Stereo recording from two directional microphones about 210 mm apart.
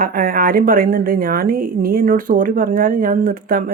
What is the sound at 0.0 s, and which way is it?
A woman's voice, 45° right (ahead or behind).